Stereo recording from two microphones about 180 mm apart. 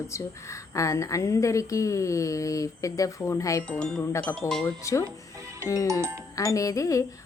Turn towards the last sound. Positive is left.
turn(degrees=20)  # may be behind; listen again after turning